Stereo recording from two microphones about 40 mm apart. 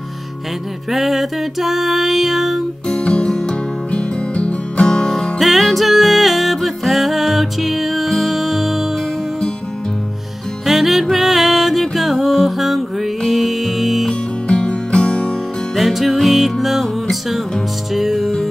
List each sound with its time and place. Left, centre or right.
0.9 s music: centre
3.0 s music: left
5.0 s music: centre
10.7 s music: centre
14.5 s music: left
15.7 s music: centre